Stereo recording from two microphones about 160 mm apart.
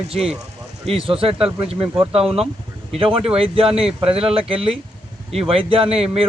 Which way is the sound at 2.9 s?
35° right (ahead or behind).